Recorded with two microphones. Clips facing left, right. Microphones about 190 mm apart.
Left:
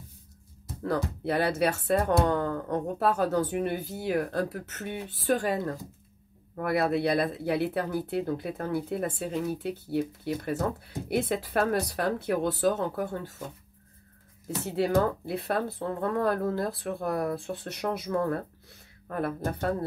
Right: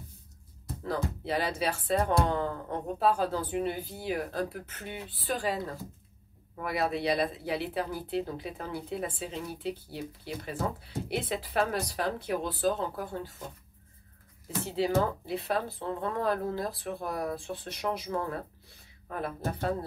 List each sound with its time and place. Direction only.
0.8 s a woman's voice: 60° left (ahead or behind)
14.8 s speech: 55° left (ahead or behind)